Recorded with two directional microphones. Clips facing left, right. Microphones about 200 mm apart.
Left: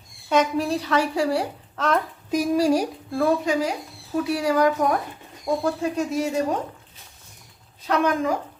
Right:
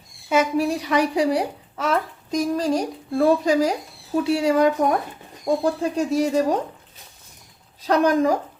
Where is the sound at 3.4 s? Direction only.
40° right (ahead or behind).